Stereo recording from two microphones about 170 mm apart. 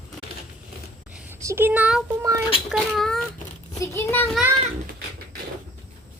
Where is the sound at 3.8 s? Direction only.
15° left (ahead or behind).